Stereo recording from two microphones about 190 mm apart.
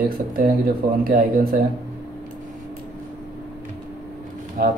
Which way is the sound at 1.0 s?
50° right (ahead or behind).